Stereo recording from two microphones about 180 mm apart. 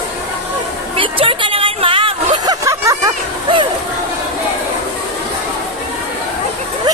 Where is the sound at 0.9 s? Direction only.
30° right (ahead or behind).